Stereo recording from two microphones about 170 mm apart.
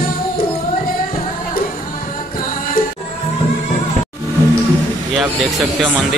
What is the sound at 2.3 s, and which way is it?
Music, 55° left (ahead or behind).